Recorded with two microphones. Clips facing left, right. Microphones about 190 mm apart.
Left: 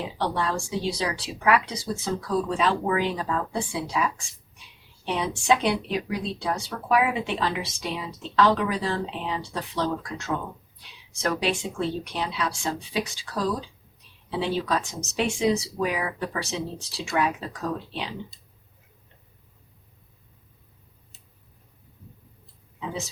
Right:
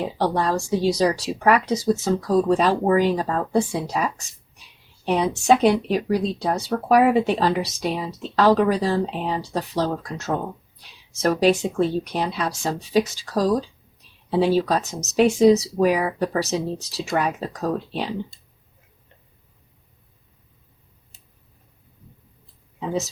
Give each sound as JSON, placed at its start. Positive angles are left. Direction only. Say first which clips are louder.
{"t": 0.2, "sound": "speech", "louder": "right 5 dB", "side_deg": -40}